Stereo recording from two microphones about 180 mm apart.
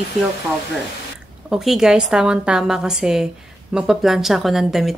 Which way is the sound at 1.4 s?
5° right (ahead or behind).